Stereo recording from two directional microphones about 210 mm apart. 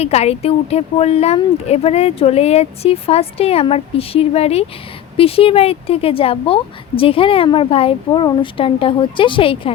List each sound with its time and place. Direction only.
0.0 s speech: 30° left (ahead or behind)